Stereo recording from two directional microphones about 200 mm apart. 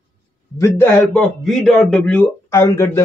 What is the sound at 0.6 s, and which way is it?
Speech, 10° left (ahead or behind).